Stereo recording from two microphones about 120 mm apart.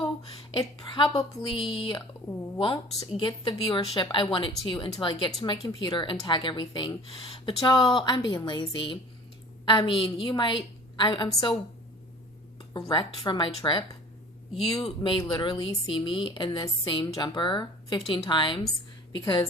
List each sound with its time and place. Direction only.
0.0 s a woman's voice: 50° left (ahead or behind)
3.5 s a woman's voice: 30° left (ahead or behind)
7.1 s a woman's voice: 50° left (ahead or behind)
11.3 s a woman's voice: 30° left (ahead or behind)
12.5 s a woman's voice: 40° left (ahead or behind)
14.5 s a woman's voice: 50° left (ahead or behind)